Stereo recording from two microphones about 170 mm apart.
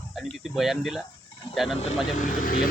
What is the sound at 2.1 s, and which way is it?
Speech, 50° left (ahead or behind).